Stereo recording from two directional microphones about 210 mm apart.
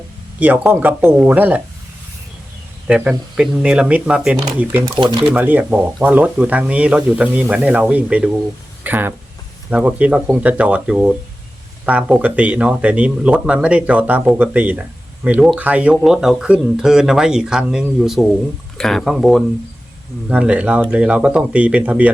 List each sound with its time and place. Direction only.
0.3 s speech: 5° right (ahead or behind)
2.8 s speech: 5° right (ahead or behind)
4.9 s speech: 20° right (ahead or behind)
5.3 s speech: 10° right (ahead or behind)
8.8 s a sound: 10° right (ahead or behind)
9.6 s speech: 5° right (ahead or behind)